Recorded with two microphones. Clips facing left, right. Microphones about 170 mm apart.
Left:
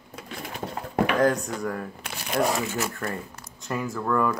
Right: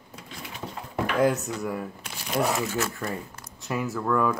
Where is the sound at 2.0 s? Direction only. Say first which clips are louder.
Left 1 dB; 65° left (ahead or behind).